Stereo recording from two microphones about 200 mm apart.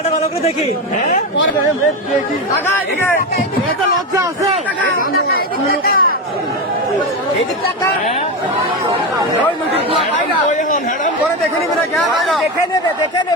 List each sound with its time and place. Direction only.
2.6 s speech: 10° left (ahead or behind)
5.8 s speech: 45° left (ahead or behind)
11.9 s speech: centre (ahead or behind)
12.7 s speech: 20° left (ahead or behind)